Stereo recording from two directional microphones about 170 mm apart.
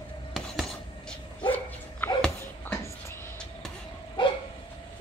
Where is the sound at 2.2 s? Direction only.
10° left (ahead or behind).